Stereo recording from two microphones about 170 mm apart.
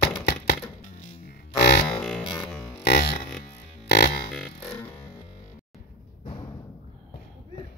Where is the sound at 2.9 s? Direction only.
75° left (ahead or behind).